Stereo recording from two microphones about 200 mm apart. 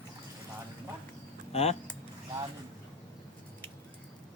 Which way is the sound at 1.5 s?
30° left (ahead or behind).